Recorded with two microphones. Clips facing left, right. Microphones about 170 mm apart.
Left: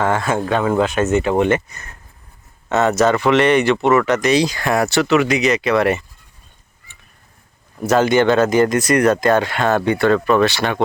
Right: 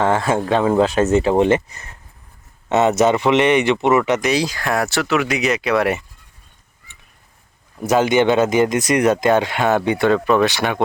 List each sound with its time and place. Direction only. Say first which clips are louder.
0.0 s speech: right 1 dB; 25° right (ahead or behind)
4.2 s speech: left 3 dB; 5° right (ahead or behind)
6.9 s crow: left 1 dB; 20° right (ahead or behind)
7.9 s speech: left 1 dB; 15° right (ahead or behind)